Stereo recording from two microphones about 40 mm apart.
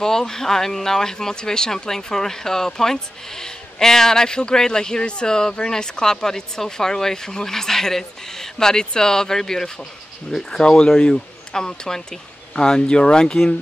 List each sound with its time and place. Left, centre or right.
0.3 s speech: centre